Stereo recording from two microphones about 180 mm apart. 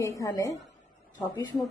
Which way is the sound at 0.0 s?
15° left (ahead or behind).